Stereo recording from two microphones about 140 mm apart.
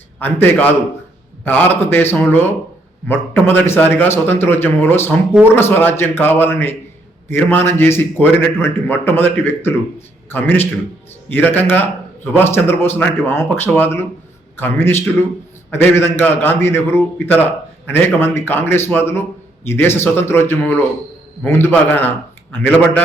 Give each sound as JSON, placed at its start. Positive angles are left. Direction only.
{"t": 0.2, "sound": "a man's voice", "side_deg": 15}